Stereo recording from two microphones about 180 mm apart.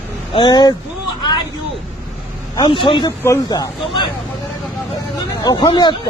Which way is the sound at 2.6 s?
30° left (ahead or behind).